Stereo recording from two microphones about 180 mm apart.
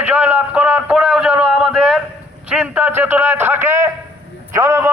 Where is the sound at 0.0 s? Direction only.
10° right (ahead or behind).